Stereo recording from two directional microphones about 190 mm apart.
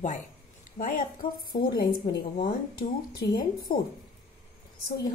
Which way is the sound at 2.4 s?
25° left (ahead or behind).